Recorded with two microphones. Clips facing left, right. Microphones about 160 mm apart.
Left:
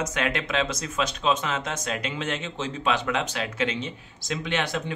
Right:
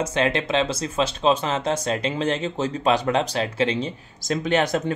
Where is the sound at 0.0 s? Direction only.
30° right (ahead or behind).